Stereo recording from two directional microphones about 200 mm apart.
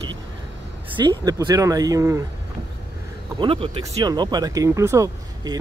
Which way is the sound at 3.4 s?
30° right (ahead or behind).